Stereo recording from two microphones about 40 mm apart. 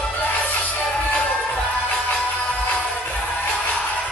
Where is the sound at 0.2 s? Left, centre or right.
Left.